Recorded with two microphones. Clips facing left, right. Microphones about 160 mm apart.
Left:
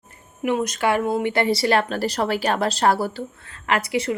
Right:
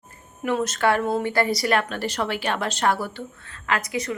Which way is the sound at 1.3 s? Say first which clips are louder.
Left 4 dB; 25° left (ahead or behind).